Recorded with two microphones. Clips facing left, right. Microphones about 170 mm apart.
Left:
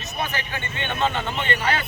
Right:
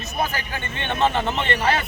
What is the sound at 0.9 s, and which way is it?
Speech, 35° right (ahead or behind).